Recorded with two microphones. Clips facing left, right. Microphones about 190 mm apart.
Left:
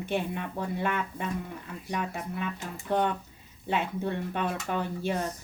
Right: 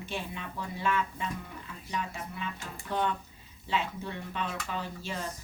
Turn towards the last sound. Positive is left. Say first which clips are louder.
# left 7 dB
turn(degrees=55)  # may be behind; listen again after turning